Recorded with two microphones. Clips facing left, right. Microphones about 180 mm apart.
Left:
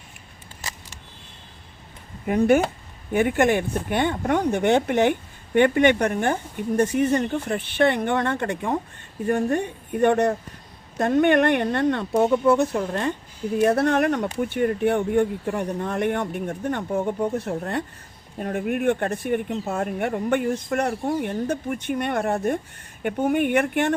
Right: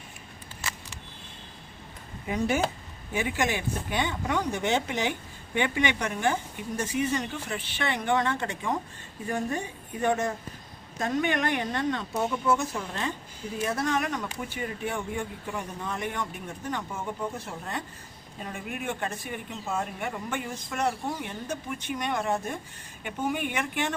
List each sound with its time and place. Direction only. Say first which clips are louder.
2.2 s speech: left 8 dB; 60° left (ahead or behind)